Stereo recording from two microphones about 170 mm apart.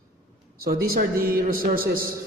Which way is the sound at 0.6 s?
60° right (ahead or behind).